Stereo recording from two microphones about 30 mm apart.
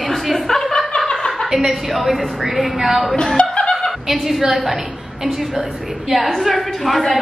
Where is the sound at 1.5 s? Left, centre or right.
Centre.